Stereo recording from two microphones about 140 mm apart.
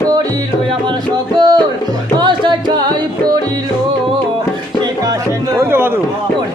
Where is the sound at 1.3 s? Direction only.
30° right (ahead or behind).